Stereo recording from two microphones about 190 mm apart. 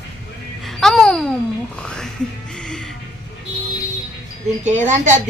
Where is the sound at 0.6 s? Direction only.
Centre (ahead or behind).